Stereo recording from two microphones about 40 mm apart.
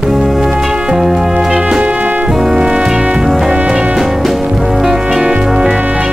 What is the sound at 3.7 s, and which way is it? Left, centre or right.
Music, right.